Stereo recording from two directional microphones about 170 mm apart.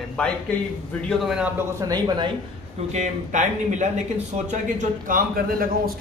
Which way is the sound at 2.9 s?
45° right (ahead or behind).